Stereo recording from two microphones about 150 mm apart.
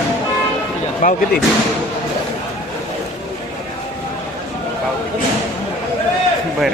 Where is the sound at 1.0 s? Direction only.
60° left (ahead or behind).